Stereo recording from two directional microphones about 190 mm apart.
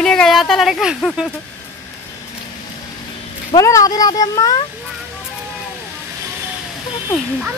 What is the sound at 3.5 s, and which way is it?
Speech, 15° left (ahead or behind).